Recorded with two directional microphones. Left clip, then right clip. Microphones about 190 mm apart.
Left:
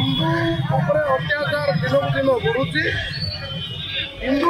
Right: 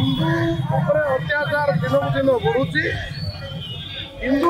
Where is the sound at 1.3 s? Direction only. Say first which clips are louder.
Even; 30° right (ahead or behind).